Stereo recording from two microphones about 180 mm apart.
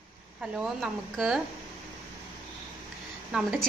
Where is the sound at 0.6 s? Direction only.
Centre (ahead or behind).